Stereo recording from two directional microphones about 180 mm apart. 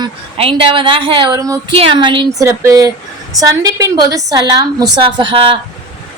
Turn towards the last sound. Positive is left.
turn(degrees=-30)  # may be behind; listen again after turning